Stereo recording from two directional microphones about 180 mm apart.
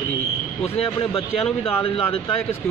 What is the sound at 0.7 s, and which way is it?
Speech, 30° left (ahead or behind).